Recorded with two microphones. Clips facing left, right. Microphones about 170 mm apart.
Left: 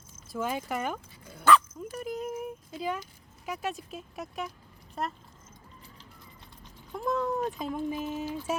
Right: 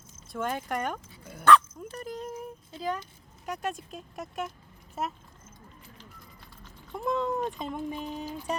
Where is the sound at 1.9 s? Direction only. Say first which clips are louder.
Left 3 dB; 10° left (ahead or behind).